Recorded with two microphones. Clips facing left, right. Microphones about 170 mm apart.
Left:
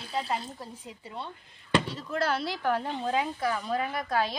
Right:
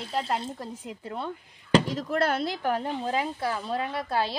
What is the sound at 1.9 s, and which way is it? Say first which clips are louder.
Speech: right 3 dB; 75° right (ahead or behind).